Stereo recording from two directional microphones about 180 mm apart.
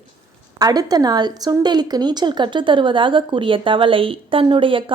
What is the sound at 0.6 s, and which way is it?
A woman's voice, 20° right (ahead or behind).